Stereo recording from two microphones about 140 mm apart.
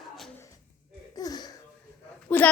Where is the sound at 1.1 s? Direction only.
25° left (ahead or behind).